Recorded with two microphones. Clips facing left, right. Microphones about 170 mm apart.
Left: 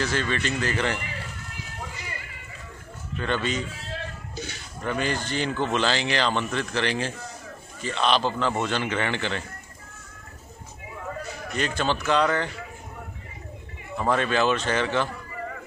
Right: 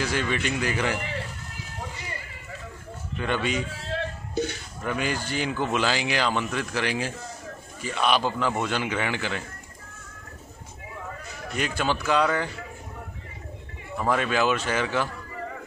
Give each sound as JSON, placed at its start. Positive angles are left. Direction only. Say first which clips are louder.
{"t": 0.0, "sound": "speech", "louder": "even", "side_deg": -10}
{"t": 3.2, "sound": "speech", "louder": "even", "side_deg": -10}
{"t": 4.8, "sound": "speech", "louder": "left 1 dB", "side_deg": -10}
{"t": 11.5, "sound": "speech", "louder": "left 1 dB", "side_deg": -10}
{"t": 13.9, "sound": "speech", "louder": "left 1 dB", "side_deg": -5}